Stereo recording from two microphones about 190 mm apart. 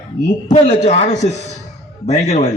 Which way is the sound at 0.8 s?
35° left (ahead or behind).